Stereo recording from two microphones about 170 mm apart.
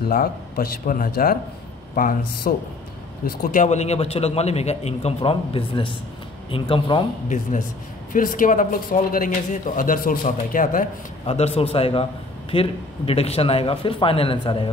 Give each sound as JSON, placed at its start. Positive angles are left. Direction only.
{"t": 0.1, "sound": "a man's voice", "side_deg": 60}
{"t": 8.1, "sound": "speech", "side_deg": 55}
{"t": 11.2, "sound": "a man's voice", "side_deg": 35}